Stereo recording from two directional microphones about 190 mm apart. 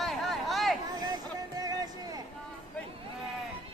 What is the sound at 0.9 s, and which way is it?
Vehicle, 20° right (ahead or behind).